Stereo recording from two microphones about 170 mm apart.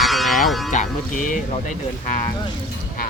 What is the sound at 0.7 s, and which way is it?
Speech, 50° left (ahead or behind).